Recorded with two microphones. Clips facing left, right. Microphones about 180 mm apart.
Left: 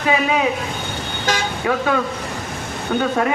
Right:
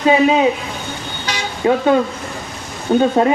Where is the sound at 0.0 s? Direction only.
25° right (ahead or behind).